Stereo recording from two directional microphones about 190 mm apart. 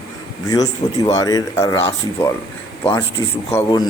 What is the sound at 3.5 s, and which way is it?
Speech, 15° left (ahead or behind).